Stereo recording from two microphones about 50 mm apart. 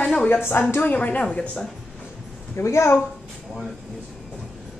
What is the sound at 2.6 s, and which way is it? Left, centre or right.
Speech, left.